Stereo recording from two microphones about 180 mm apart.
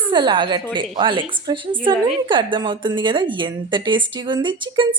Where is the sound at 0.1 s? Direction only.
25° right (ahead or behind).